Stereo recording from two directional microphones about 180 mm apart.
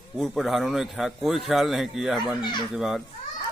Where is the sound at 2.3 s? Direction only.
25° left (ahead or behind).